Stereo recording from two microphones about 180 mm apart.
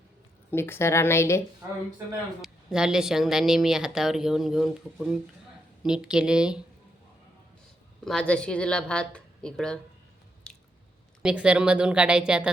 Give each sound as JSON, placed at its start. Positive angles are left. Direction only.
{"t": 0.5, "sound": "speech", "side_deg": 15}
{"t": 2.4, "sound": "speech", "side_deg": -5}
{"t": 8.0, "sound": "speech", "side_deg": 5}
{"t": 10.5, "sound": "squish", "side_deg": 5}
{"t": 11.2, "sound": "speech", "side_deg": -5}